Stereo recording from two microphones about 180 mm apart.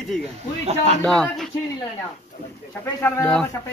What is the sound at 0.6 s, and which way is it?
Speech, 35° right (ahead or behind).